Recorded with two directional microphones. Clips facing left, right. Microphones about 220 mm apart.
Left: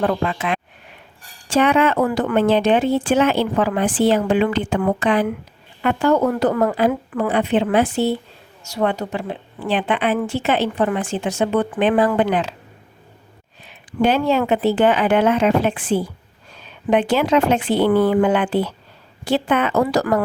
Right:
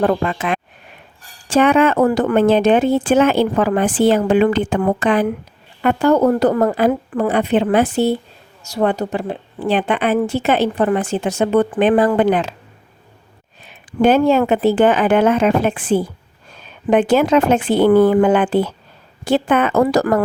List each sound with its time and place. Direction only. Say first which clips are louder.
0.0 s speech: right 3 dB; 45° right (ahead or behind)
14.0 s speech: right 4 dB; 50° right (ahead or behind)